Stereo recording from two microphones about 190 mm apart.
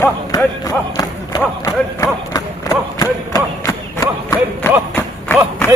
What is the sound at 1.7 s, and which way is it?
Speech, 20° left (ahead or behind).